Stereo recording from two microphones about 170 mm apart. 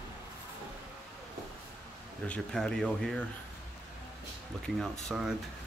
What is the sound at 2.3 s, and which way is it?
Speech, 5° left (ahead or behind).